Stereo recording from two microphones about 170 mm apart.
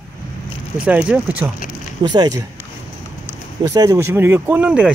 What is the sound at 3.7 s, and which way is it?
Speech, 20° right (ahead or behind).